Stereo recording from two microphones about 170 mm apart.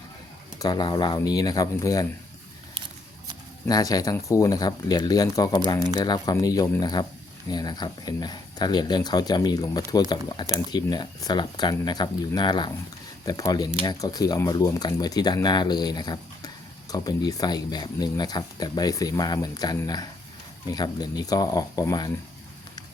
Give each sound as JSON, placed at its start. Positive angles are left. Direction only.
{"t": 0.6, "sound": "speech", "side_deg": 25}
{"t": 3.7, "sound": "speech", "side_deg": 20}